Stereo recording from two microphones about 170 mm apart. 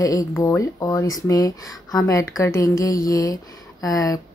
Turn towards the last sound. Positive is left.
turn(degrees=20)  # may be behind; listen again after turning